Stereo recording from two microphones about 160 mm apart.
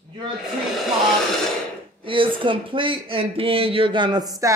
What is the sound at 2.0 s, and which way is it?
Speech, 35° right (ahead or behind).